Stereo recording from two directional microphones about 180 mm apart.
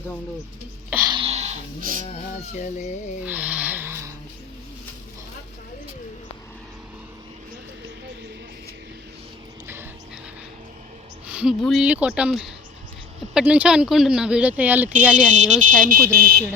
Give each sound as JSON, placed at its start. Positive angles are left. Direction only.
{"t": 1.0, "sound": "speech", "side_deg": -30}
{"t": 3.2, "sound": "speech", "side_deg": -10}
{"t": 11.3, "sound": "speech", "side_deg": -5}
{"t": 15.3, "sound": "speech", "side_deg": -45}
{"t": 16.1, "sound": "speech", "side_deg": -55}